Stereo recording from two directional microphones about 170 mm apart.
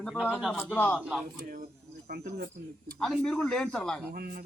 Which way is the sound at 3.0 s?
Centre (ahead or behind).